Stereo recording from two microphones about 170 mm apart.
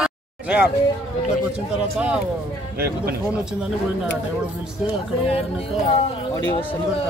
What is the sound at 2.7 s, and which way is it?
Speech, 65° right (ahead or behind).